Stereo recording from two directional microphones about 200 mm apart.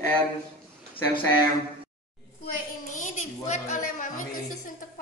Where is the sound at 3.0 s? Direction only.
40° left (ahead or behind).